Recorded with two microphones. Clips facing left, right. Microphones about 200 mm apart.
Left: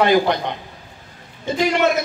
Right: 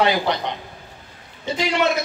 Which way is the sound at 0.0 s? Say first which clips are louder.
Left 4 dB; 50° left (ahead or behind).